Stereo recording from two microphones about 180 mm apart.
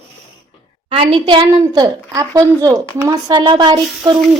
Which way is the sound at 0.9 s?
30° right (ahead or behind).